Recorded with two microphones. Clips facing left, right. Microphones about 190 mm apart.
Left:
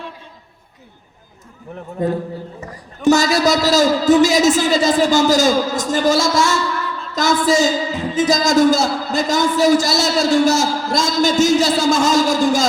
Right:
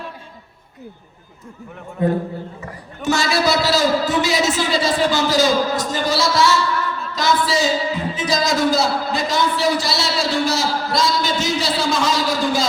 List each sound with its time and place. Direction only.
3.0 s speech: 40° left (ahead or behind)